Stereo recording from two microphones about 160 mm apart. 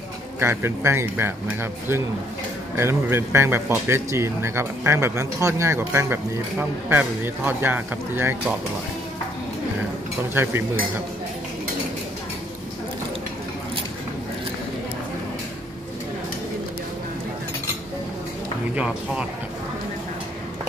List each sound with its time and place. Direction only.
0.4 s speech: 15° right (ahead or behind)
10.3 s speech: 15° right (ahead or behind)
18.8 s speech: 5° right (ahead or behind)